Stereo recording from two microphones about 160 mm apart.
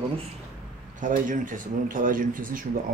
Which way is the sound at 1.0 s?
55° right (ahead or behind).